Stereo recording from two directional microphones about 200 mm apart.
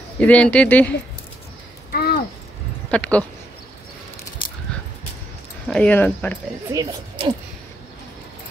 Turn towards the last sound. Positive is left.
turn(degrees=-25)  # may be behind; listen again after turning